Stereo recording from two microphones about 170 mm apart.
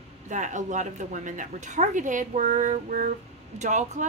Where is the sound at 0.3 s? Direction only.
45° right (ahead or behind).